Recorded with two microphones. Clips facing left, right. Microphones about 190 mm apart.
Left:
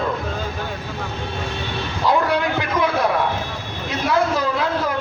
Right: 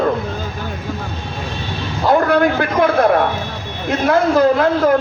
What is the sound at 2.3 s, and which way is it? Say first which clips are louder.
Speech: right 6 dB; 55° right (ahead or behind).